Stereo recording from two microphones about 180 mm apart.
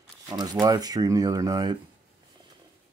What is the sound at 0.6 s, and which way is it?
Speech, 25° right (ahead or behind).